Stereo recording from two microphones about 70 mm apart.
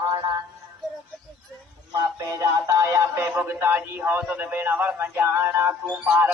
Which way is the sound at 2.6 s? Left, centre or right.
Right.